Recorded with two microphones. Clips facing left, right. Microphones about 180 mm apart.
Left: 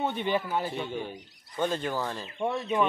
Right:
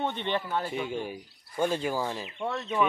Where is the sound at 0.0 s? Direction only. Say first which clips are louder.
Left 2 dB; 5° left (ahead or behind).